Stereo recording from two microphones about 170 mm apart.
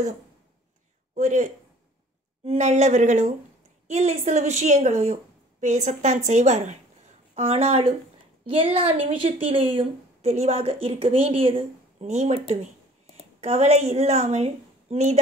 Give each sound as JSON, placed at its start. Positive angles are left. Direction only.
{"t": 1.1, "sound": "a woman's voice", "side_deg": -45}
{"t": 13.4, "sound": "a woman's voice", "side_deg": -40}